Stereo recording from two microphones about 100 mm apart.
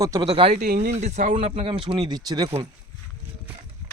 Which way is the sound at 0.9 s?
90° right.